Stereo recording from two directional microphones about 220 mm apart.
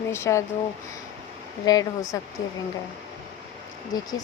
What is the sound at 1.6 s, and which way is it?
Speech, 15° left (ahead or behind).